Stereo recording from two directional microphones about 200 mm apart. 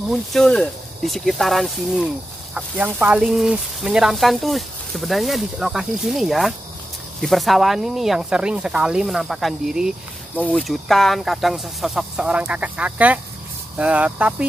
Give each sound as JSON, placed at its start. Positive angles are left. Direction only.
{"t": 0.1, "sound": "speech", "side_deg": 0}